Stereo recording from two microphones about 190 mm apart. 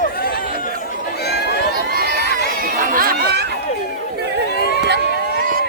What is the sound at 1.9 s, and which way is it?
Crowd, 55° right (ahead or behind).